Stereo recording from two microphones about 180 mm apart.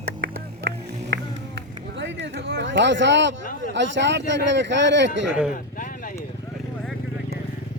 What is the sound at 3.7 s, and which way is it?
Speech, 85° right.